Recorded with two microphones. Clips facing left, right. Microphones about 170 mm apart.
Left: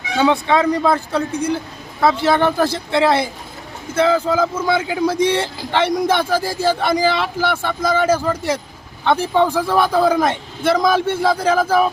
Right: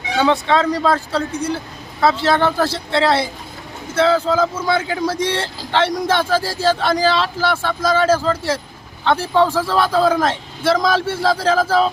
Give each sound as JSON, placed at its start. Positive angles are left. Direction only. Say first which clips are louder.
{"t": 0.2, "sound": "speech", "louder": "left 1 dB", "side_deg": 10}